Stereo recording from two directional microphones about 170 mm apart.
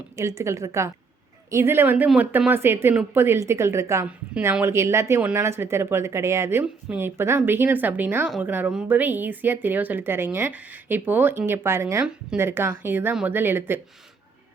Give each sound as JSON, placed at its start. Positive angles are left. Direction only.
{"t": 0.2, "sound": "speech", "side_deg": -15}